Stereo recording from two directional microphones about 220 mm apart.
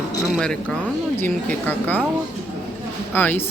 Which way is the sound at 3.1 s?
10° left (ahead or behind).